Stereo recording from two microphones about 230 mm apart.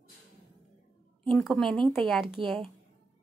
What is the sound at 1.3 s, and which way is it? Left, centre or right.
Speech, centre.